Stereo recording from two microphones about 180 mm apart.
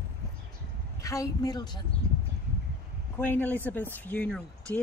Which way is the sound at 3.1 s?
10° left (ahead or behind).